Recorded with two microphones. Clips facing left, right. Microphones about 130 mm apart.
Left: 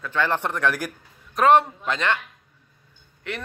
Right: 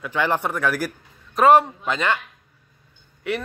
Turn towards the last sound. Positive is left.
turn(degrees=-10)  # may be behind; listen again after turning